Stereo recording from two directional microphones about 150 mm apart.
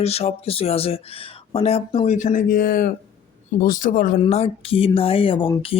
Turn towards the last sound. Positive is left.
turn(degrees=35)  # may be behind; listen again after turning